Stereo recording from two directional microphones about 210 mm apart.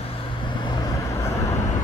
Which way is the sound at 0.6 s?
20° left (ahead or behind).